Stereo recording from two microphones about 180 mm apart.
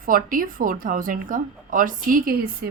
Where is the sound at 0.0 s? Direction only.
50° right (ahead or behind).